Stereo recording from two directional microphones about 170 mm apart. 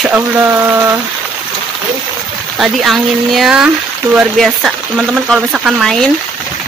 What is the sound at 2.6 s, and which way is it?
Speech, centre (ahead or behind).